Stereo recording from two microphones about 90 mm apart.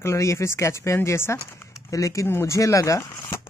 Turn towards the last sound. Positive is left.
turn(degrees=35)  # may be behind; listen again after turning